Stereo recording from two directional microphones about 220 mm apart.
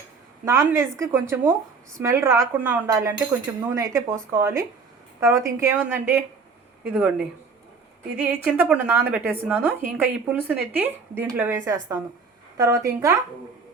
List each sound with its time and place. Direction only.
0.4 s a woman's voice: 10° right (ahead or behind)
8.2 s a woman's voice: 5° right (ahead or behind)